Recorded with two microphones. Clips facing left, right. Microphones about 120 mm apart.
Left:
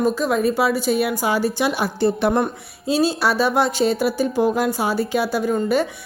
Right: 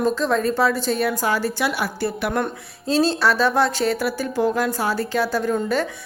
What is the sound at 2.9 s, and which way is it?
A woman's voice, 10° left (ahead or behind).